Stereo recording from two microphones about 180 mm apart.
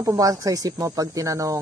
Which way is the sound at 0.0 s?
20° right (ahead or behind).